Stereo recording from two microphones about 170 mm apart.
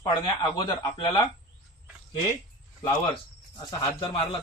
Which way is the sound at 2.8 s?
25° left (ahead or behind).